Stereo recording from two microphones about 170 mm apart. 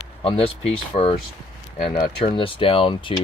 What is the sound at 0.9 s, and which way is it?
Speech, 40° left (ahead or behind).